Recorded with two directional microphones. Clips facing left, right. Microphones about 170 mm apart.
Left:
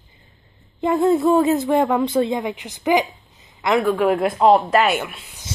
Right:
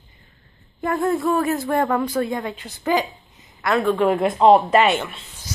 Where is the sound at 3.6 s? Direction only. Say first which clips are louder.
Left 2 dB; 20° left (ahead or behind).